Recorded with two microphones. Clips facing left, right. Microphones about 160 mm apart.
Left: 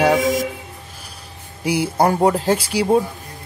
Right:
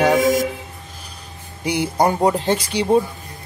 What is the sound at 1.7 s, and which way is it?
Speech, 5° left (ahead or behind).